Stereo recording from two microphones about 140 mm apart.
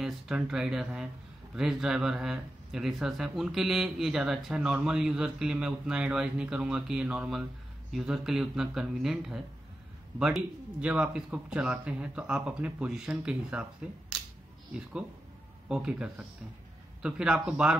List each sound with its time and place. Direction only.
0.0 s speech: 5° right (ahead or behind)
14.7 s speech: 10° right (ahead or behind)